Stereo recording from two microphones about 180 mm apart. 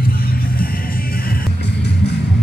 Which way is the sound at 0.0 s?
55° left (ahead or behind).